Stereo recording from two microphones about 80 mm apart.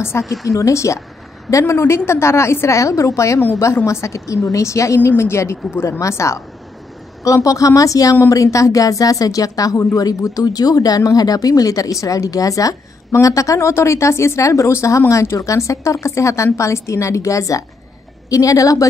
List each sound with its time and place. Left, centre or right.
0.2 s a woman's voice: centre
0.5 s a woman's voice: left